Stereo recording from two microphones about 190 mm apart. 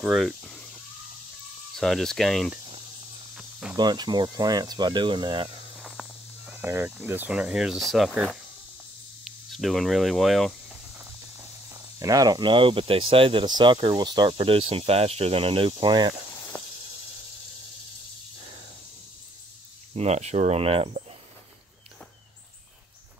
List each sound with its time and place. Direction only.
0.0 s a sound: centre (ahead or behind)
1.8 s speech: centre (ahead or behind)
3.3 s cricket: 5° right (ahead or behind)
3.7 s speech: 20° right (ahead or behind)
5.8 s speech: centre (ahead or behind)
11.0 s speech: 15° right (ahead or behind)
16.5 s snake: 10° left (ahead or behind)
19.9 s speech: 35° right (ahead or behind)